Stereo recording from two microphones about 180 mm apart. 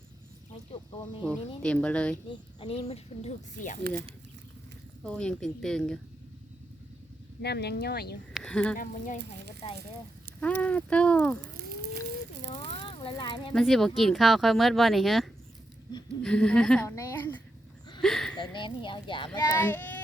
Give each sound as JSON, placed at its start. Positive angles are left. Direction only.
{"t": 0.5, "sound": "a sound", "side_deg": 30}
{"t": 1.2, "sound": "speech", "side_deg": 5}
{"t": 2.3, "sound": "speech", "side_deg": 30}
{"t": 5.0, "sound": "speech", "side_deg": 5}
{"t": 7.4, "sound": "speech", "side_deg": 65}
{"t": 8.3, "sound": "speech", "side_deg": 0}
{"t": 8.8, "sound": "speech", "side_deg": 45}
{"t": 10.4, "sound": "speech", "side_deg": 5}
{"t": 12.5, "sound": "a sound", "side_deg": 30}
{"t": 13.5, "sound": "speech", "side_deg": 0}
{"t": 16.9, "sound": "a sound", "side_deg": 15}
{"t": 18.5, "sound": "speech", "side_deg": 25}
{"t": 19.4, "sound": "speech", "side_deg": 15}